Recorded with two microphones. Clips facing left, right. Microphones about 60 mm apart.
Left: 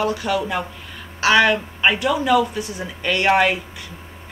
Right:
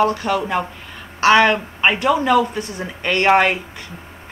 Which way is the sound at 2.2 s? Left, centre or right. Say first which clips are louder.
Right 1 dB; right.